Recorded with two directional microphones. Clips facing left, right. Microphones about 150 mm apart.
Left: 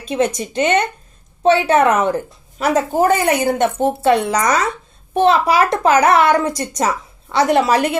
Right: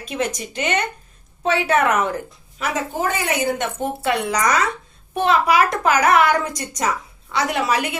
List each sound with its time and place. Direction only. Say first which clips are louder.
0.1 s a child's voice: left 7 dB; 25° left (ahead or behind)
2.6 s a child's voice: left 8 dB; 40° left (ahead or behind)